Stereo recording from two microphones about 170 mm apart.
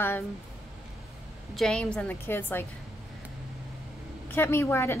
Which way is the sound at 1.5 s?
5° left (ahead or behind).